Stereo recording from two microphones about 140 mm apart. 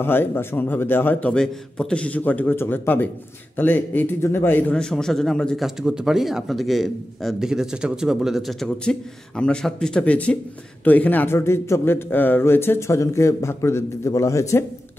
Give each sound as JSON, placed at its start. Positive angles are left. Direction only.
{"t": 0.0, "sound": "a man's voice", "side_deg": 15}